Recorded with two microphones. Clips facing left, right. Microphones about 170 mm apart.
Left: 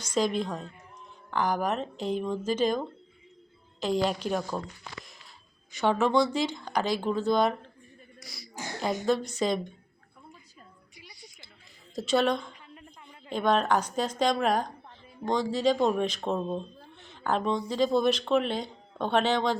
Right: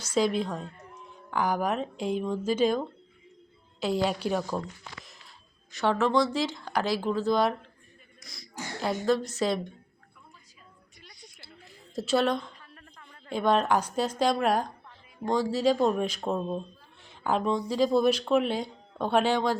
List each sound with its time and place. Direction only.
0.0 s speech: 5° right (ahead or behind)
5.7 s speech: centre (ahead or behind)
10.9 s a sound: 5° left (ahead or behind)
11.9 s speech: 5° right (ahead or behind)
12.7 s a sound: 15° left (ahead or behind)
13.3 s speech: 5° right (ahead or behind)